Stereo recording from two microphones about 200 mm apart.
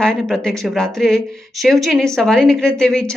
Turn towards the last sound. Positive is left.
turn(degrees=5)  # may be behind; listen again after turning